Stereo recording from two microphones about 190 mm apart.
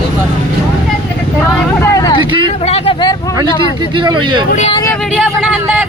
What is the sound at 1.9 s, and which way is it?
Vehicle, 20° left (ahead or behind).